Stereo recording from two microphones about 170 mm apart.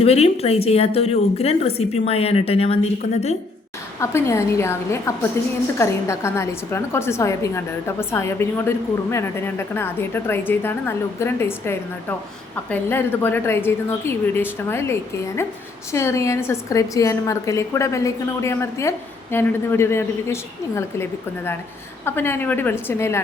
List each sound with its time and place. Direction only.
0.0 s a woman's voice: 35° left (ahead or behind)
4.0 s a woman's voice: 15° left (ahead or behind)